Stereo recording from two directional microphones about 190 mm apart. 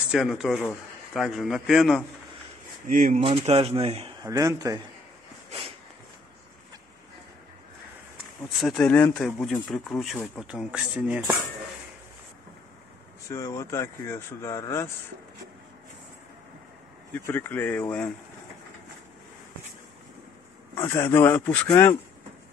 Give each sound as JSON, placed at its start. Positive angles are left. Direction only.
{"t": 0.1, "sound": "speech", "side_deg": 0}
{"t": 2.9, "sound": "speech", "side_deg": -45}
{"t": 3.2, "sound": "a man's voice", "side_deg": -30}
{"t": 4.3, "sound": "speech", "side_deg": -15}
{"t": 8.5, "sound": "speech", "side_deg": 0}
{"t": 13.3, "sound": "speech", "side_deg": 15}
{"t": 17.1, "sound": "speech", "side_deg": 10}
{"t": 20.8, "sound": "speech", "side_deg": 15}